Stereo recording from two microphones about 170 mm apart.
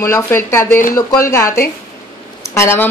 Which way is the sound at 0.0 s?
15° left (ahead or behind).